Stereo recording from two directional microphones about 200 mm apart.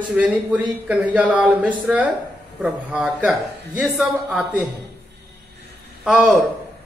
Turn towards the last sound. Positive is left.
turn(degrees=-5)  # may be behind; listen again after turning